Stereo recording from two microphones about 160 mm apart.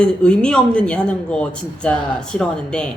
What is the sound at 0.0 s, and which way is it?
Speech, 5° left (ahead or behind).